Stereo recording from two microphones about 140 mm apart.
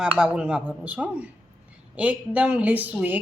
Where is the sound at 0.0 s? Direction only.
5° right (ahead or behind).